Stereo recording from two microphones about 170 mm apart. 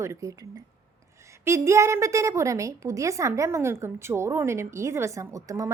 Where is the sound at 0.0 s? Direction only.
20° right (ahead or behind).